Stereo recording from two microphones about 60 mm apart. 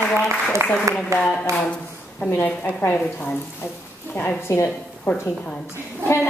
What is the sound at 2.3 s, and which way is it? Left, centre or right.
A woman's voice, left.